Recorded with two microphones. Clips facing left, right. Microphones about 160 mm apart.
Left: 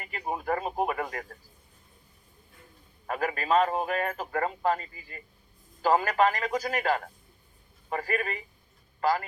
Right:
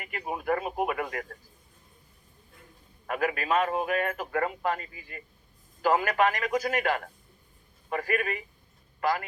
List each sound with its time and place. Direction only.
0.0 s speech: 30° left (ahead or behind)
3.1 s a man's voice: 30° left (ahead or behind)